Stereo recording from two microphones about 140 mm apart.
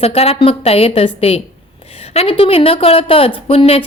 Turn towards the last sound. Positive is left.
turn(degrees=45)  # may be behind; listen again after turning